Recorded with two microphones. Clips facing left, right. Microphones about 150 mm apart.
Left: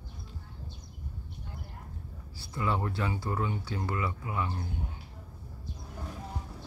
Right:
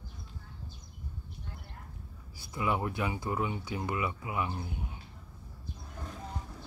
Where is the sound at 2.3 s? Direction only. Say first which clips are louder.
Even; 15° right (ahead or behind).